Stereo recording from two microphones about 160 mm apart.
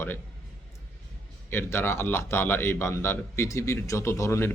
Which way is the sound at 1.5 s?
15° left (ahead or behind).